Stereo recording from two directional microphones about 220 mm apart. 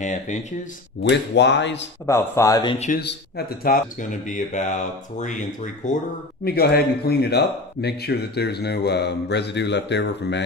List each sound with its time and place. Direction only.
0.0 s speech: 35° left (ahead or behind)
1.0 s speech: 50° left (ahead or behind)
2.0 s speech: 10° left (ahead or behind)
2.9 s speech: 45° left (ahead or behind)
6.4 s speech: 45° left (ahead or behind)